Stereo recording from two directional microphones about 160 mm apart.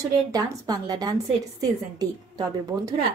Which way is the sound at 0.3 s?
25° right (ahead or behind).